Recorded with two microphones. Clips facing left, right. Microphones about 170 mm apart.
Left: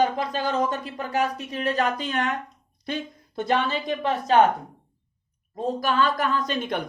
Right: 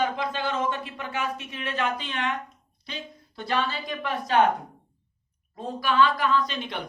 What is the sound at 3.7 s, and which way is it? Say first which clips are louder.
Speech: left 5 dB; 25° left (ahead or behind).